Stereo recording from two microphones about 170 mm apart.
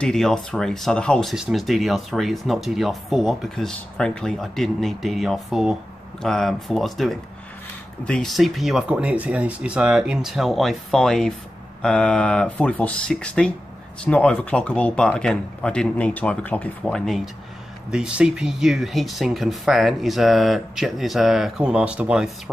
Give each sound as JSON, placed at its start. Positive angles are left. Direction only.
{"t": 0.0, "sound": "speech", "side_deg": 5}